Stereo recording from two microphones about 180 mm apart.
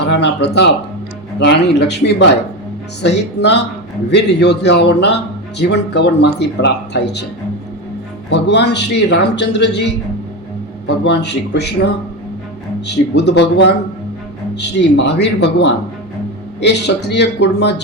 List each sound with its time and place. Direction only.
0.0 s a man's voice: 70° left (ahead or behind)
8.3 s a man's voice: 70° left (ahead or behind)
12.9 s a man's voice: 70° left (ahead or behind)